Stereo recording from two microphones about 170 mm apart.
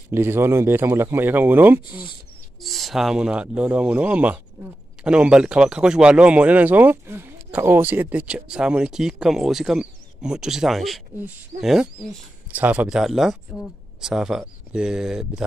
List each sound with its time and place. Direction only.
0.1 s speech: 15° right (ahead or behind)
1.9 s speech: 30° left (ahead or behind)
2.6 s speech: centre (ahead or behind)